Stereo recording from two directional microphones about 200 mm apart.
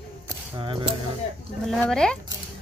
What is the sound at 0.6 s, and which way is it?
Speech, 25° right (ahead or behind).